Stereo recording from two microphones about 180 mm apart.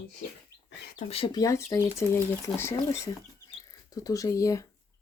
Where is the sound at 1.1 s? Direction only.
30° left (ahead or behind).